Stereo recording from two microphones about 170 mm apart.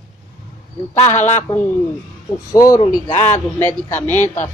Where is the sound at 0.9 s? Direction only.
40° left (ahead or behind).